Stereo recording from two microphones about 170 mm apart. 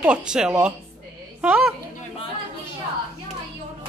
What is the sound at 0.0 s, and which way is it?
A woman's voice, 5° right (ahead or behind).